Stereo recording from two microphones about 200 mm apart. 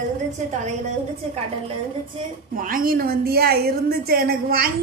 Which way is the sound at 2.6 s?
45° right (ahead or behind).